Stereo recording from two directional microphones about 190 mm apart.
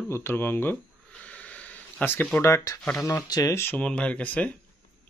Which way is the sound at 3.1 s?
20° left (ahead or behind).